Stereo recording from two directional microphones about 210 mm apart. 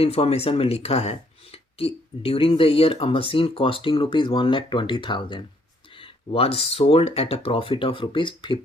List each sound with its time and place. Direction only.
0.0 s speech: 30° left (ahead or behind)